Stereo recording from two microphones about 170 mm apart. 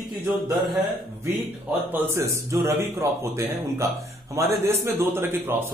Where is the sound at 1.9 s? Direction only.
15° right (ahead or behind).